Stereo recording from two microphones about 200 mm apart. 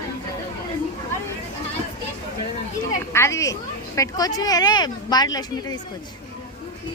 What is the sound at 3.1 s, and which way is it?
Speech, 15° left (ahead or behind).